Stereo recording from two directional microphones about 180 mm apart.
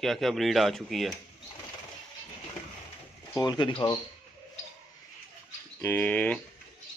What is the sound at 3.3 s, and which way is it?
Speech, 25° left (ahead or behind).